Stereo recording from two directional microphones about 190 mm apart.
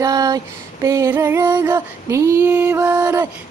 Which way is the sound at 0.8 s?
15° right (ahead or behind).